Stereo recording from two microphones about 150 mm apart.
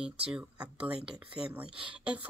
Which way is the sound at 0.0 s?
5° right (ahead or behind).